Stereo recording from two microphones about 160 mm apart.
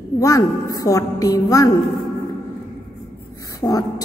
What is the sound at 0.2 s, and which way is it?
A woman's voice, 20° left (ahead or behind).